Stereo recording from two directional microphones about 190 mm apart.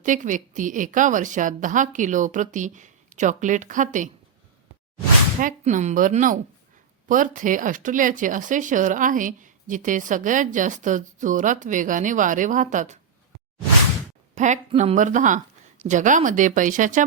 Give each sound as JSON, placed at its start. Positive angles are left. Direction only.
{"t": 0.0, "sound": "a woman's voice", "side_deg": -40}
{"t": 5.4, "sound": "speech", "side_deg": -45}
{"t": 14.3, "sound": "a woman's voice", "side_deg": -40}